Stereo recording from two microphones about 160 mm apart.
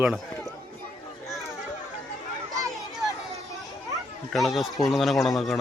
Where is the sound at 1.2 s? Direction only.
Centre (ahead or behind).